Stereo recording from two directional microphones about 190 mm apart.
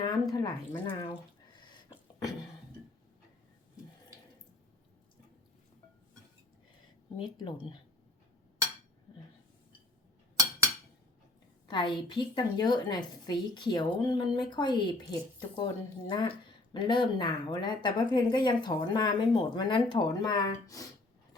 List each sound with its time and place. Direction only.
0.0 s a woman's voice: 20° left (ahead or behind)
1.6 s a sound: 20° left (ahead or behind)
7.2 s a woman's voice: 25° left (ahead or behind)
11.7 s a woman's voice: 25° left (ahead or behind)